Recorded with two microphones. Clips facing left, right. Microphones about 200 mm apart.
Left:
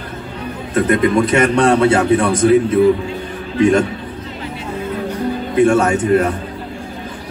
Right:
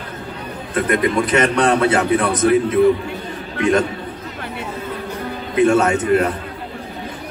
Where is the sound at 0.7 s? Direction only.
25° left (ahead or behind).